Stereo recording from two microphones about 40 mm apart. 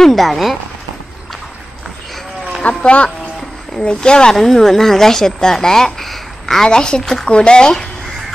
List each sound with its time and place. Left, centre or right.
0.0 s speech: centre
2.8 s speech: left
3.8 s speech: left
4.3 s speech: centre